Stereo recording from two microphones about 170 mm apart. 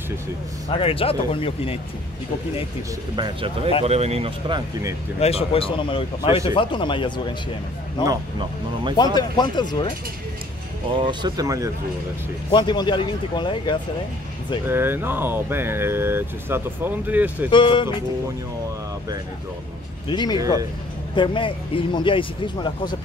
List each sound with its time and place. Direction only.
0.7 s a man's voice: 35° left (ahead or behind)
3.2 s speech: 30° right (ahead or behind)
5.2 s a man's voice: 35° left (ahead or behind)
8.0 s speech: 25° right (ahead or behind)
8.9 s speech: 25° left (ahead or behind)
10.9 s speech: 30° right (ahead or behind)
12.4 s speech: 25° left (ahead or behind)
14.7 s speech: 15° right (ahead or behind)
17.5 s speech: 30° left (ahead or behind)
20.1 s speech: 25° left (ahead or behind)
20.3 s speech: 20° right (ahead or behind)
21.1 s speech: 30° left (ahead or behind)